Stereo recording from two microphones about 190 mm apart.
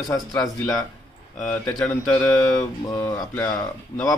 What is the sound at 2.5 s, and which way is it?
Speech, 15° left (ahead or behind).